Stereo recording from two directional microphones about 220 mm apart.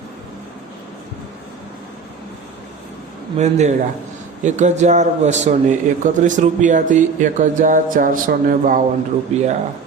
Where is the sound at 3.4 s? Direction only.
30° right (ahead or behind).